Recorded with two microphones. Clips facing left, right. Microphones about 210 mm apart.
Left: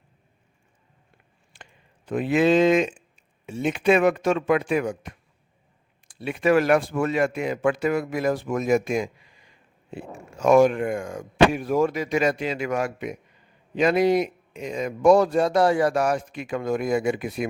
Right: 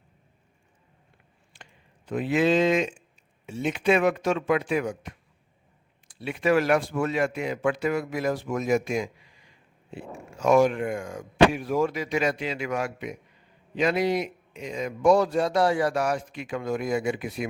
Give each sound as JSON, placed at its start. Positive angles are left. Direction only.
{"t": 1.5, "sound": "a sound", "side_deg": 55}
{"t": 2.0, "sound": "a man's voice", "side_deg": 55}
{"t": 10.4, "sound": "a man's voice", "side_deg": 50}